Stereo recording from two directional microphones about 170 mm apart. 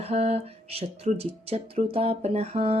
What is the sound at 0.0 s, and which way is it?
Speech, 35° right (ahead or behind).